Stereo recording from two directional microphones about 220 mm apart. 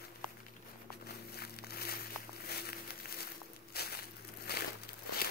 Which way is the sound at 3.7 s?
45° left (ahead or behind).